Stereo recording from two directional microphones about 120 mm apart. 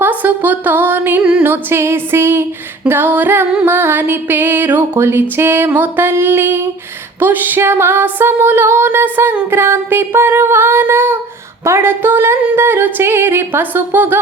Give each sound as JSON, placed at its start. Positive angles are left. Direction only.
{"t": 0.0, "sound": "music", "side_deg": -15}
{"t": 1.5, "sound": "music", "side_deg": -20}